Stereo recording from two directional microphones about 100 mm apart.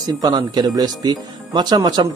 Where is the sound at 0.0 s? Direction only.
40° right (ahead or behind).